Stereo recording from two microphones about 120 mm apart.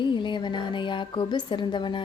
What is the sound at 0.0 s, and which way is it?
A woman's voice, 40° left (ahead or behind).